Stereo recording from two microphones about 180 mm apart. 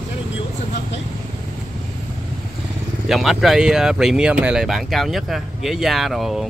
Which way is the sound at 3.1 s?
Centre (ahead or behind).